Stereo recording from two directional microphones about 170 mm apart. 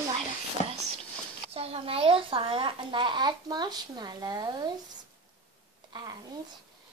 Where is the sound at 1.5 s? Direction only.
35° right (ahead or behind).